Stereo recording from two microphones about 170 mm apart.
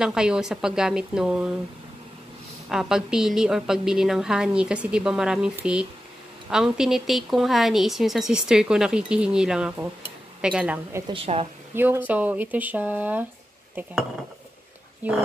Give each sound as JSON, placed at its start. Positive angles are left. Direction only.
{"t": 0.0, "sound": "a woman's voice", "side_deg": -5}
{"t": 2.7, "sound": "a woman's voice", "side_deg": -5}
{"t": 11.1, "sound": "a woman's voice", "side_deg": -35}
{"t": 11.7, "sound": "speech", "side_deg": -10}
{"t": 15.0, "sound": "speech", "side_deg": -10}